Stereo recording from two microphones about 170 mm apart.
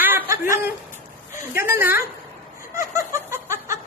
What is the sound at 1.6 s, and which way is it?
Speech, 15° right (ahead or behind).